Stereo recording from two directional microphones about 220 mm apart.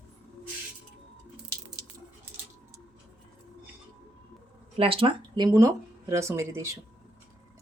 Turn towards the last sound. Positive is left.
turn(degrees=-10)  # may be behind; listen again after turning